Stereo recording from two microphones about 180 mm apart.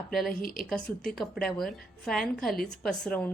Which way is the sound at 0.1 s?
Centre (ahead or behind).